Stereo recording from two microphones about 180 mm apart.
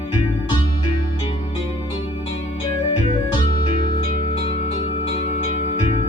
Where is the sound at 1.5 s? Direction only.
30° left (ahead or behind).